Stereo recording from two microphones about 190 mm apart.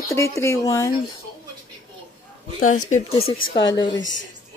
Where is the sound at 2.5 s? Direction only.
45° left (ahead or behind).